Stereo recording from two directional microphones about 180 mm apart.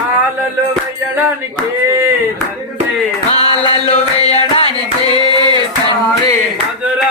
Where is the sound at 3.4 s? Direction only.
35° left (ahead or behind).